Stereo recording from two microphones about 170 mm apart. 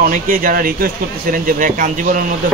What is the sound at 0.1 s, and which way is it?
Speech, 55° right (ahead or behind).